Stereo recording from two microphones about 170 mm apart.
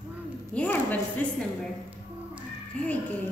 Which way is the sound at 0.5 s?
10° left (ahead or behind).